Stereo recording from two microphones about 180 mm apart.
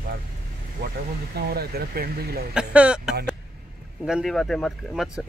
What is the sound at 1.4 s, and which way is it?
Speech, 60° right (ahead or behind).